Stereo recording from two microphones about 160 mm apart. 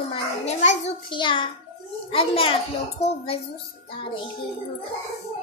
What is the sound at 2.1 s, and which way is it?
Child singing, 35° left (ahead or behind).